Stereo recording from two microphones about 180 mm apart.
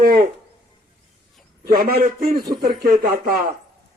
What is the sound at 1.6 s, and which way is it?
A man's voice, 55° right (ahead or behind).